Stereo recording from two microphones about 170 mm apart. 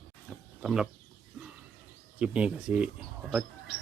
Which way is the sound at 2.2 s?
5° right (ahead or behind).